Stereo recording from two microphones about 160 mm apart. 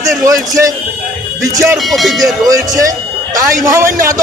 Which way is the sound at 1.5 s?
15° right (ahead or behind).